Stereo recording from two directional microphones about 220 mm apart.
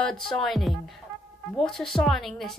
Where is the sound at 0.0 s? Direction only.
Centre (ahead or behind).